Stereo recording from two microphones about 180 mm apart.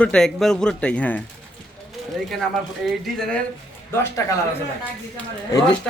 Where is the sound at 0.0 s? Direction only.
5° left (ahead or behind).